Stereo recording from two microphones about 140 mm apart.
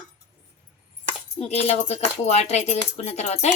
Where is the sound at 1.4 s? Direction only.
50° left (ahead or behind).